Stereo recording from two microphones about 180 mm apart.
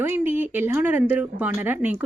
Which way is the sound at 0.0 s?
10° right (ahead or behind).